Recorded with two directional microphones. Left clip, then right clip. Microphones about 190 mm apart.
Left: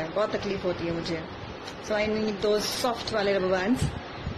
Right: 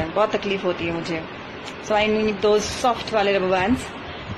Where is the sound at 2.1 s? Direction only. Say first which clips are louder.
Right 7 dB; 10° left (ahead or behind).